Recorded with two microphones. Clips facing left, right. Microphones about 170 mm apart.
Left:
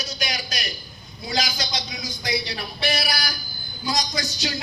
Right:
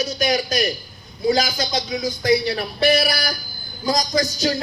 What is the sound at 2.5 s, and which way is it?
Speech, 50° right (ahead or behind).